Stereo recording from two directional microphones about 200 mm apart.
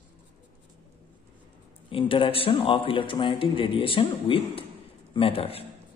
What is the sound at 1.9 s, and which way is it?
A man's voice, 25° left (ahead or behind).